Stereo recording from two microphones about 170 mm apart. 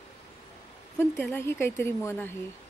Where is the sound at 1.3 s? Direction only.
15° left (ahead or behind).